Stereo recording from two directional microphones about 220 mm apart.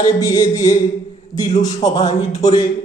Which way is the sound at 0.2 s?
15° left (ahead or behind).